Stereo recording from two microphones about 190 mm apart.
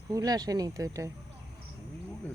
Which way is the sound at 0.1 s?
20° right (ahead or behind).